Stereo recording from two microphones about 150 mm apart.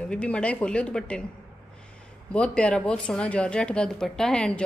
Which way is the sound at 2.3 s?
5° left (ahead or behind).